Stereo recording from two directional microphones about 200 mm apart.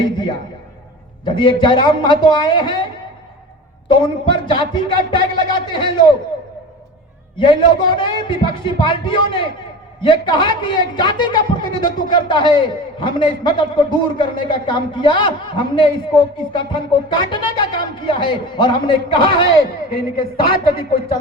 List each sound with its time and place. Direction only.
1.2 s a man's voice: 25° left (ahead or behind)
3.8 s a man's voice: 25° left (ahead or behind)
7.3 s a man's voice: 25° left (ahead or behind)